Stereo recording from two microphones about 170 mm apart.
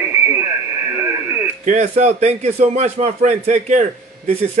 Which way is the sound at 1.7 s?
40° right (ahead or behind).